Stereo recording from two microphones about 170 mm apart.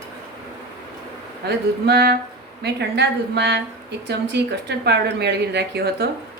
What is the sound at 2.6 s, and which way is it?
Speech, 80° right.